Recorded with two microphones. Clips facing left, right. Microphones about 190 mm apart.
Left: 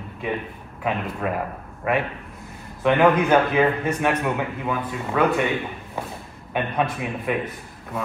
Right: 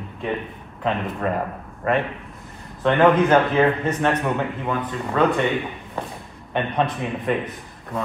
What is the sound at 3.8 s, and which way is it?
A man's voice, 10° left (ahead or behind).